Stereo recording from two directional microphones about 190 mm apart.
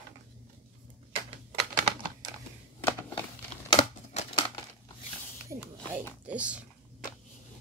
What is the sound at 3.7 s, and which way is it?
Crumpling, 30° left (ahead or behind).